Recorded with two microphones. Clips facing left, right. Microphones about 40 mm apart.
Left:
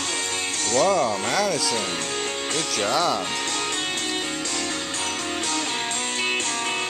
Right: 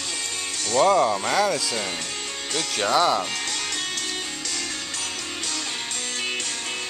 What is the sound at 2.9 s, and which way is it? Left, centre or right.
Speech, right.